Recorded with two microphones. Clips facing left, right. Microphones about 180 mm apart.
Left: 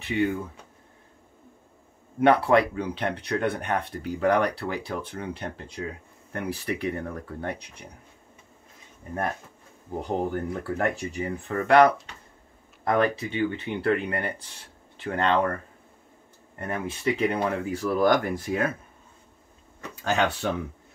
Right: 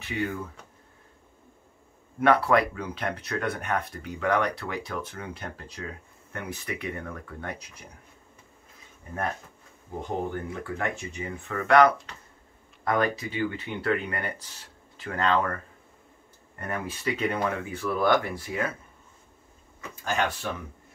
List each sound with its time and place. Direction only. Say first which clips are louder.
2.2 s speech: left 2 dB; 30° left (ahead or behind)
10.0 s speech: left 3 dB; 35° left (ahead or behind)
19.8 s speech: left 3 dB; 65° left (ahead or behind)